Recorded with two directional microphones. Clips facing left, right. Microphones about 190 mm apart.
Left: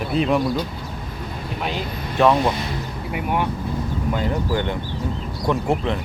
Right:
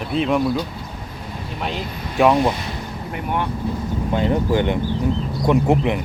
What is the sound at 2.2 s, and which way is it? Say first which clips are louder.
Speech: right 1 dB; 15° right (ahead or behind).